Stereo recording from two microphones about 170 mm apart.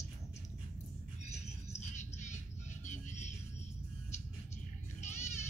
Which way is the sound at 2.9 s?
45° left (ahead or behind).